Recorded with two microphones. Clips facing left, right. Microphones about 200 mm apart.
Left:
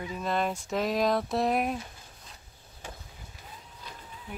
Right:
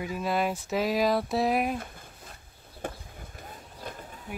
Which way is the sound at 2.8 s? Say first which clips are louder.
Right 8 dB; 55° right (ahead or behind).